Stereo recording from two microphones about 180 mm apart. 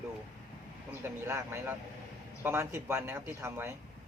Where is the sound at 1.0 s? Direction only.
10° right (ahead or behind).